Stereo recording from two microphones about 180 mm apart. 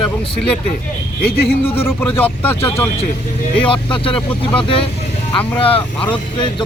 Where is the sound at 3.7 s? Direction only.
30° left (ahead or behind).